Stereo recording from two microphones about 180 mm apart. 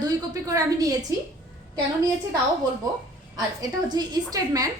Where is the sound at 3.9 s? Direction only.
20° right (ahead or behind).